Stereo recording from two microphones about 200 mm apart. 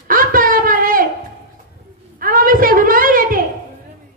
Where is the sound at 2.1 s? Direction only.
45° right (ahead or behind).